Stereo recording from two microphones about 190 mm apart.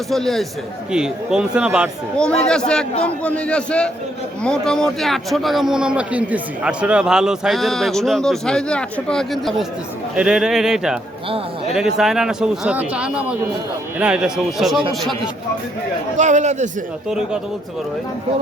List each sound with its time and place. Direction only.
0.1 s a man's voice: centre (ahead or behind)
11.9 s a man's voice: centre (ahead or behind)
16.1 s a man's voice: 40° right (ahead or behind)